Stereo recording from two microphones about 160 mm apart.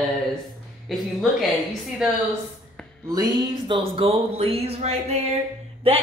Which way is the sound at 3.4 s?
30° right (ahead or behind).